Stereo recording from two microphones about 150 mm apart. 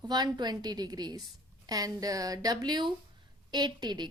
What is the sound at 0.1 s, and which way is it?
A woman's voice, 30° right (ahead or behind).